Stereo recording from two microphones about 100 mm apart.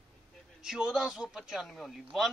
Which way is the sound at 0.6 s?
5° right (ahead or behind).